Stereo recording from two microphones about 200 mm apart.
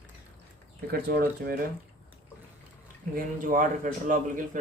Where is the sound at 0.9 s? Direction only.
50° right (ahead or behind).